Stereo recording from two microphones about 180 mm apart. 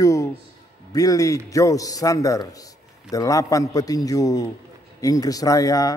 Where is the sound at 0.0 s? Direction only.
20° left (ahead or behind).